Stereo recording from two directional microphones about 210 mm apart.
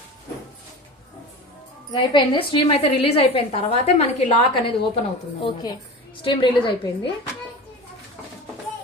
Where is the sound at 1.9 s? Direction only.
25° left (ahead or behind).